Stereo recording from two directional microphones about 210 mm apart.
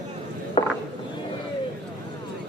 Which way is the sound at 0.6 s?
25° left (ahead or behind).